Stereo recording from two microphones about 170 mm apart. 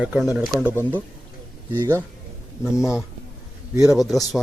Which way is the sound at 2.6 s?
5° right (ahead or behind).